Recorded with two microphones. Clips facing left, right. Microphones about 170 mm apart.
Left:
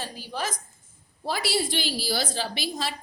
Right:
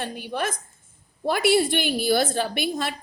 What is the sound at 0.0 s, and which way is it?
A woman's voice, 60° right (ahead or behind).